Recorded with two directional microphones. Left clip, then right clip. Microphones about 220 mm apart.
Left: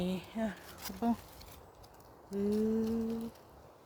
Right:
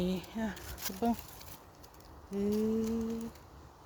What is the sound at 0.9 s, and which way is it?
Speech, 35° right (ahead or behind).